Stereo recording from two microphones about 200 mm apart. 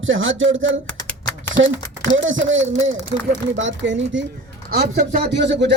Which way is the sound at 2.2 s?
70° right (ahead or behind).